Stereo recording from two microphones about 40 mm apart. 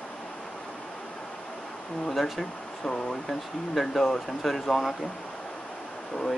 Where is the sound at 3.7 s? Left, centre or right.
Centre.